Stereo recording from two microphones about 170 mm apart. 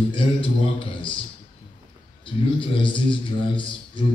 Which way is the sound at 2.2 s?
30° left (ahead or behind).